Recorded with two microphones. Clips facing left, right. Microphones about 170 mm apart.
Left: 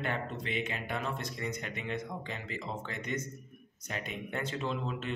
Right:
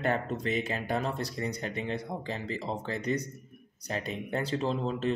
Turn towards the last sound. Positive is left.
turn(degrees=-35)  # may be behind; listen again after turning